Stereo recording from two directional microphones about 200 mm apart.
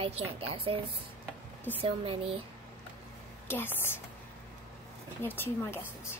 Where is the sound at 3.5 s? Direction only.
10° left (ahead or behind).